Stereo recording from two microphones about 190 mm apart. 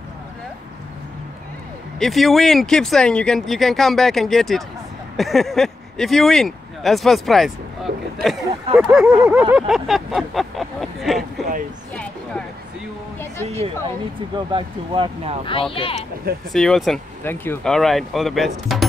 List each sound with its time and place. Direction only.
2.0 s speech: centre (ahead or behind)
11.9 s a sound: 5° left (ahead or behind)
14.3 s speech: 25° right (ahead or behind)
15.7 s speech: 30° left (ahead or behind)
16.5 s speech: centre (ahead or behind)
17.7 s speech: centre (ahead or behind)